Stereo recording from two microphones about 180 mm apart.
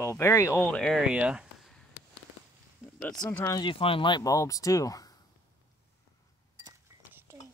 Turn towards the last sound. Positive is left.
turn(degrees=-15)  # may be behind; listen again after turning